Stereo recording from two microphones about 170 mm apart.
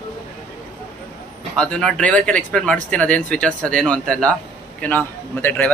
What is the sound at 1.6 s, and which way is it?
A man's voice, 5° left (ahead or behind).